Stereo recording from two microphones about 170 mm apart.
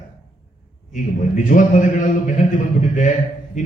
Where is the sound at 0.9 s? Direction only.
50° left (ahead or behind).